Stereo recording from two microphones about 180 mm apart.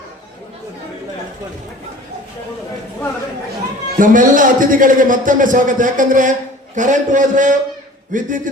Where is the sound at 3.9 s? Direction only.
45° right (ahead or behind).